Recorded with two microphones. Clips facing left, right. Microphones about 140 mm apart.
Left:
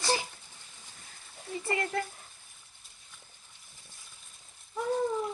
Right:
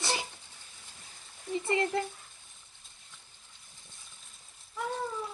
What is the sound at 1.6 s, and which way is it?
Speech, 25° right (ahead or behind).